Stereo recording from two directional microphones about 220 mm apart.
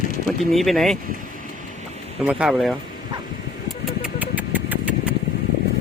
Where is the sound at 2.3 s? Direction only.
5° right (ahead or behind).